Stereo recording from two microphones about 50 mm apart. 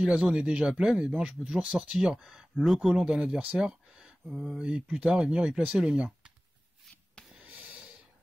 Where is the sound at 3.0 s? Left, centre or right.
Centre.